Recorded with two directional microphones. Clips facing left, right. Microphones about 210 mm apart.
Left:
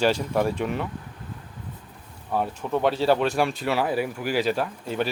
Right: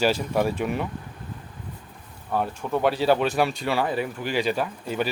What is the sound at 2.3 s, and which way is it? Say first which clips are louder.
Speech: even; centre (ahead or behind).